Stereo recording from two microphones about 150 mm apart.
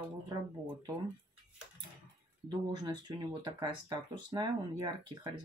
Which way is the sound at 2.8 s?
30° right (ahead or behind).